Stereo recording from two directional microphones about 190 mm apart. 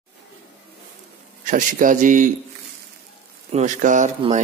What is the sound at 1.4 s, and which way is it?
Speech, 40° right (ahead or behind).